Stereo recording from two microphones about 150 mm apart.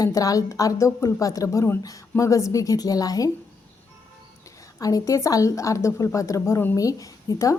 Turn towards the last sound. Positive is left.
turn(degrees=20)  # may be behind; listen again after turning